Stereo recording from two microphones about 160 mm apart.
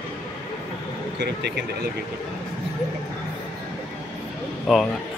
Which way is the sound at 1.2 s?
90° right.